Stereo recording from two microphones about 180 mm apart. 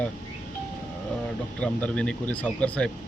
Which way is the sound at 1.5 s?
5° left (ahead or behind).